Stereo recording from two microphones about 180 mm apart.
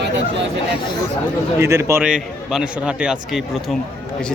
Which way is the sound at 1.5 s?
15° right (ahead or behind).